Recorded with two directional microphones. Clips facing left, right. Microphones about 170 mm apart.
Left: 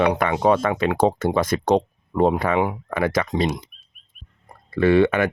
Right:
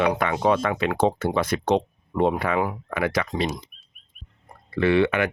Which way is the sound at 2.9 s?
40° left (ahead or behind).